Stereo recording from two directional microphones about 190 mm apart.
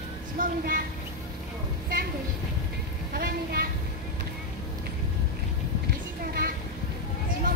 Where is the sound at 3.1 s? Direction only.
50° right (ahead or behind).